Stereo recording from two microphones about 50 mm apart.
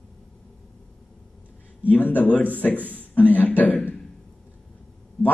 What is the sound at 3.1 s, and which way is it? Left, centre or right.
Speech, left.